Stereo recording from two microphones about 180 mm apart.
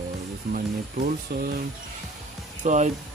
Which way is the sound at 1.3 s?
60° right (ahead or behind).